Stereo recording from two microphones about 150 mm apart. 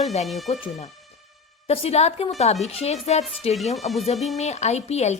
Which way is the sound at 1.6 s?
40° left (ahead or behind).